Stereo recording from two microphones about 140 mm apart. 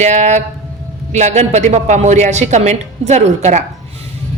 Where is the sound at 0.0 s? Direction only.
55° right (ahead or behind).